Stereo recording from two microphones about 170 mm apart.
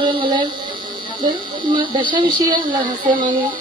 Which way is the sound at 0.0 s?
30° right (ahead or behind).